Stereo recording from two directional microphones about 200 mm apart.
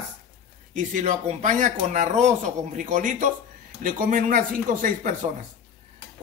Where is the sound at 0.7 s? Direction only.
40° right (ahead or behind).